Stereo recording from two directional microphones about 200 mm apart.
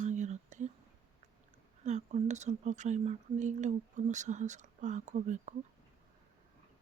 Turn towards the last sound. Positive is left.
turn(degrees=-35)  # may be behind; listen again after turning